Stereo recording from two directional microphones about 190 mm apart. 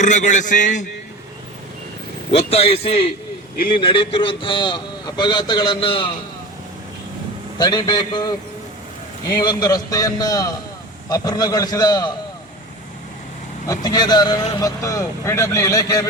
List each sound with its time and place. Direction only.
0.0 s a man's voice: 40° left (ahead or behind)
2.3 s a man's voice: 30° left (ahead or behind)
7.6 s a man's voice: 20° left (ahead or behind)
13.7 s speech: 20° left (ahead or behind)